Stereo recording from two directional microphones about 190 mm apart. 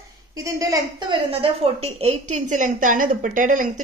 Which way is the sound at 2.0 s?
40° right (ahead or behind).